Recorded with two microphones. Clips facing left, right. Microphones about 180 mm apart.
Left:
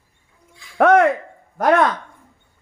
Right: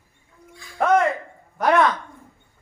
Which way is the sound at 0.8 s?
70° left (ahead or behind).